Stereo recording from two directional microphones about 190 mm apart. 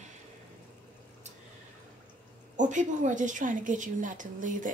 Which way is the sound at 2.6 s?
40° right (ahead or behind).